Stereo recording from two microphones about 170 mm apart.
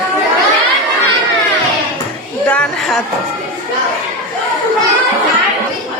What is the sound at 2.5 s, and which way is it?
Speech, 5° left (ahead or behind).